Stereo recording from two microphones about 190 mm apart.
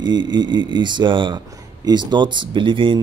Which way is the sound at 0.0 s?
25° right (ahead or behind).